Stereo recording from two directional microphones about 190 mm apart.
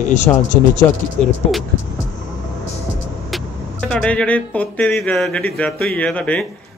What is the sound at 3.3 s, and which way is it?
A man's voice, centre (ahead or behind).